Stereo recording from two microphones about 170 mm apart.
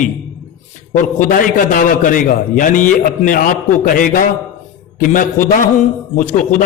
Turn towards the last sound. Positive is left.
turn(degrees=50)  # may be behind; listen again after turning